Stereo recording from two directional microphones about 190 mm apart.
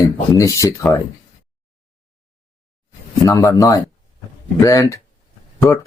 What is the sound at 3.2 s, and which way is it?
Speech, 15° left (ahead or behind).